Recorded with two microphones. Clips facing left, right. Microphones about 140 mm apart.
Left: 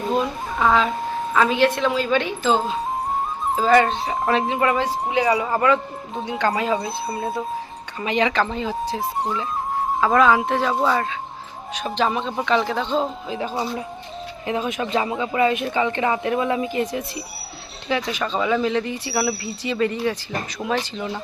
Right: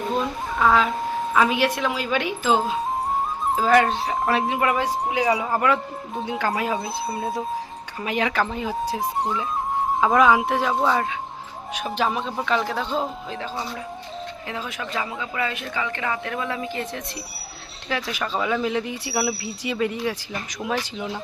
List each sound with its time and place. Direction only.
0.2 s a woman's voice: centre (ahead or behind)
10.1 s a woman's voice: 10° right (ahead or behind)
10.8 s speech: centre (ahead or behind)
13.3 s speech: 15° left (ahead or behind)
17.8 s speech: centre (ahead or behind)